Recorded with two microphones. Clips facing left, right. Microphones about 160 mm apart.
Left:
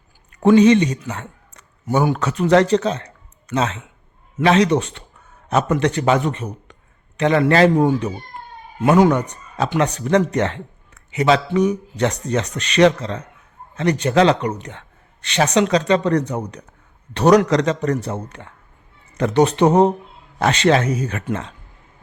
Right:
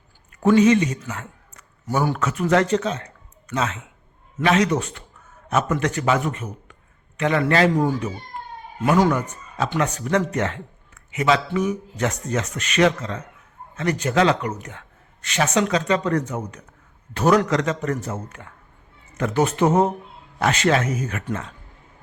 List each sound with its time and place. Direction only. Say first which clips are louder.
0.3 s a man's voice: left 4 dB; 30° left (ahead or behind)
2.1 s a man's voice: left 5 dB; 35° left (ahead or behind)
8.8 s a man's voice: left 4 dB; 20° left (ahead or behind)
9.0 s speech: left 4 dB; 35° left (ahead or behind)